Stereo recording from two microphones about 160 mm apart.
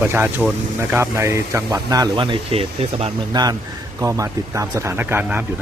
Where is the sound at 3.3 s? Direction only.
25° right (ahead or behind).